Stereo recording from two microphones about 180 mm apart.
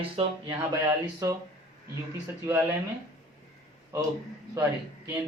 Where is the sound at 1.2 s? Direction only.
20° right (ahead or behind).